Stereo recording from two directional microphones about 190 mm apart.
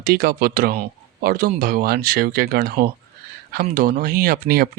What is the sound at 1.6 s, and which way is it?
Speech, 50° right (ahead or behind).